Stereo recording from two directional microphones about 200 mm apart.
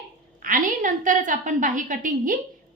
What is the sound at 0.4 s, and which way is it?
A woman's voice, 40° right (ahead or behind).